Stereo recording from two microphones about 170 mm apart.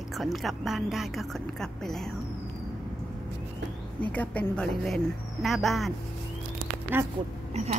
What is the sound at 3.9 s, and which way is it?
A woman's voice, 10° left (ahead or behind).